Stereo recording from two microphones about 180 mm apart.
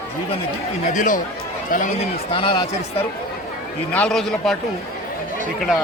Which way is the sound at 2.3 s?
25° left (ahead or behind).